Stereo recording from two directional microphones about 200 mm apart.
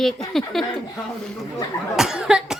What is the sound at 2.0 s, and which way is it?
Speech, 5° right (ahead or behind).